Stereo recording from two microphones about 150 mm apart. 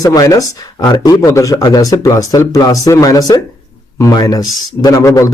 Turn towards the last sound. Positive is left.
turn(degrees=20)  # may be behind; listen again after turning